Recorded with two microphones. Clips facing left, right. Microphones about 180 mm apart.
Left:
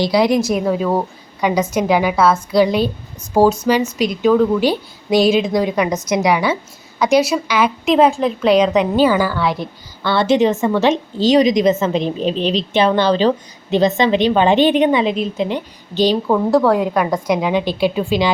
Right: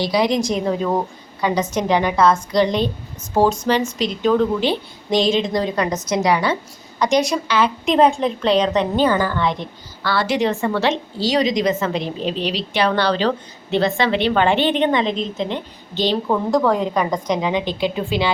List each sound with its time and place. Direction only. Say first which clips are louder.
0.0 s a woman's voice: left 4 dB; 10° left (ahead or behind)
10.0 s a woman's voice: left 5 dB; 25° left (ahead or behind)